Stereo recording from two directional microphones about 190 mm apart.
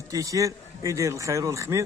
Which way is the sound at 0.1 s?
15° right (ahead or behind).